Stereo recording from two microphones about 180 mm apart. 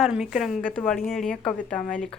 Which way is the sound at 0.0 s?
Centre (ahead or behind).